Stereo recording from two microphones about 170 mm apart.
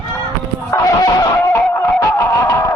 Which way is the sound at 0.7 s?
20° left (ahead or behind).